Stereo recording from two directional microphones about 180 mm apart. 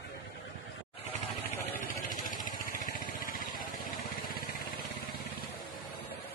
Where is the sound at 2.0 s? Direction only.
50° left (ahead or behind).